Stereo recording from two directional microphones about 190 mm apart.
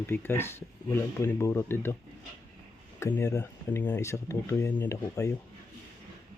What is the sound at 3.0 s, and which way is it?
Speech, 15° left (ahead or behind).